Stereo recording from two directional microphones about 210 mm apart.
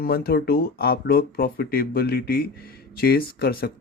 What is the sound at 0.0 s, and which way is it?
Speech, 45° left (ahead or behind).